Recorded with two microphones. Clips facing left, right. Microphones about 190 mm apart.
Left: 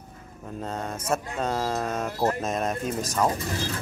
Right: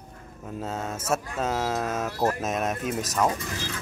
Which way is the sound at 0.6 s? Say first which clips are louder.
Even; 5° right (ahead or behind).